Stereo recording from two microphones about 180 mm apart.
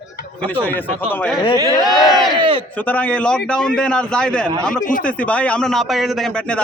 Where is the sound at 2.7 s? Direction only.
10° left (ahead or behind).